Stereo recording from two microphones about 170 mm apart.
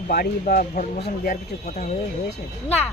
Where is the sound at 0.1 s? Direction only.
65° left (ahead or behind).